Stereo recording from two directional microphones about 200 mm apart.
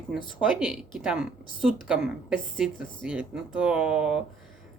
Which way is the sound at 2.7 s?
45° left (ahead or behind).